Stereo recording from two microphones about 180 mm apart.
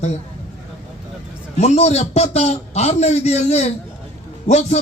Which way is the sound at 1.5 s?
35° left (ahead or behind).